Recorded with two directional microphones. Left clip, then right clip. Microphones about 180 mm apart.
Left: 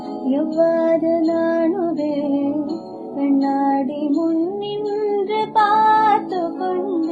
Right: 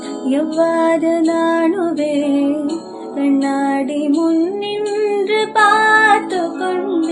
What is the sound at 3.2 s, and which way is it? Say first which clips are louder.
Music: right 2 dB; 25° right (ahead or behind).